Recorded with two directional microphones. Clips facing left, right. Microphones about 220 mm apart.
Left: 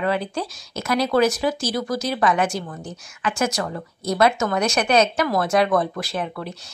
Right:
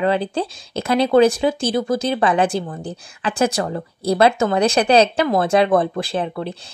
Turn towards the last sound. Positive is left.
turn(degrees=-30)  # may be behind; listen again after turning